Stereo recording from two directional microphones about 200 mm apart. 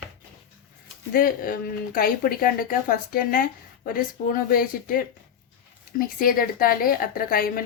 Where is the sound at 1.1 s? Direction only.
45° left (ahead or behind).